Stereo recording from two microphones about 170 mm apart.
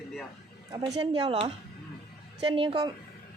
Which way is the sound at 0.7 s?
20° right (ahead or behind).